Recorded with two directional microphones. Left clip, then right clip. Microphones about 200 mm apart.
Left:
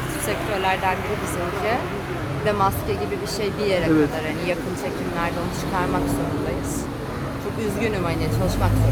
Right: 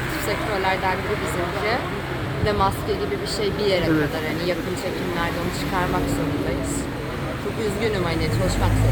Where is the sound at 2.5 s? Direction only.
10° left (ahead or behind).